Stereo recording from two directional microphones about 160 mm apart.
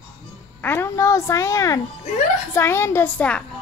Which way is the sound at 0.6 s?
15° left (ahead or behind).